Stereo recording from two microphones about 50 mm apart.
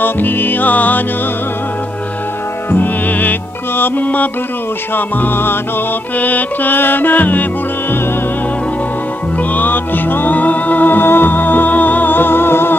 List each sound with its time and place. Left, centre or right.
0.0 s music: left
2.7 s music: left
6.1 s music: left
9.5 s music: left